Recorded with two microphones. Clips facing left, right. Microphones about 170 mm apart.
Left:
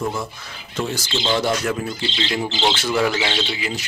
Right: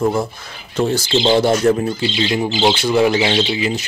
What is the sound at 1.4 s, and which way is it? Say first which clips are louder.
Speech: right 8 dB; 30° right (ahead or behind).